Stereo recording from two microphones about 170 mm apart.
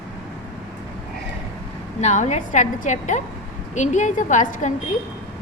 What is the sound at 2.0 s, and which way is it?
A woman's voice, 45° left (ahead or behind).